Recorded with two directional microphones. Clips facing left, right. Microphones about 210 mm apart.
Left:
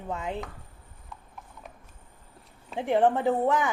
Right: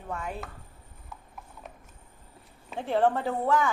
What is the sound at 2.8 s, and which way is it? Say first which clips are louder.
Speech: left 2 dB; 15° left (ahead or behind).